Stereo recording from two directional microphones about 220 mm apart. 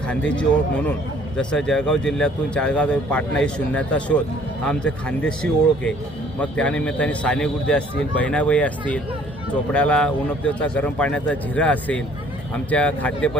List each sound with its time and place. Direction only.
1.4 s speech: 5° left (ahead or behind)